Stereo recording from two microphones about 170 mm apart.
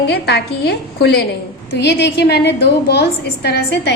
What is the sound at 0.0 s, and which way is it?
A woman's voice, 75° left (ahead or behind).